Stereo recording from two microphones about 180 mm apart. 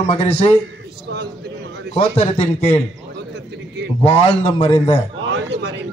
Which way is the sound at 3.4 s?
70° right (ahead or behind).